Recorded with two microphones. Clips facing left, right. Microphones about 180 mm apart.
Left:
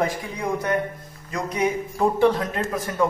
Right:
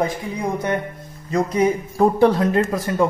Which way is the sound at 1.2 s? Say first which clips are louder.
Right 8 dB; 30° right (ahead or behind).